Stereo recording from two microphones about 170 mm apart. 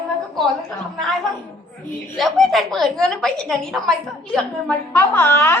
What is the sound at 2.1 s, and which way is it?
A woman's voice, centre (ahead or behind).